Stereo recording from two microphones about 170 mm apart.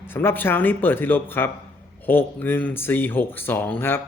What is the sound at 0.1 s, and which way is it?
Speech, 10° left (ahead or behind).